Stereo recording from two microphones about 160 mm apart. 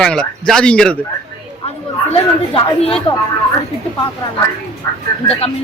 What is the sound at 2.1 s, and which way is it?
Speech, 35° left (ahead or behind).